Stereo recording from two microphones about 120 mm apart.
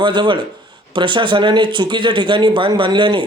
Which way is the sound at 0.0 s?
40° right (ahead or behind).